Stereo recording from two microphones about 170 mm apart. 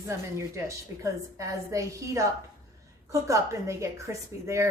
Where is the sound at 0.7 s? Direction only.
20° right (ahead or behind).